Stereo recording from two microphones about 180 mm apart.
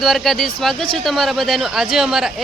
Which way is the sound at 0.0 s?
Centre (ahead or behind).